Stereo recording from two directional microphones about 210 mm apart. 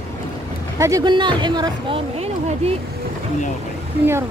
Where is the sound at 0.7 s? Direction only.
15° right (ahead or behind).